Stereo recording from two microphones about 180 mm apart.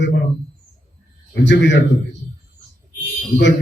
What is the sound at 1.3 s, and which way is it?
Speech, 80° left.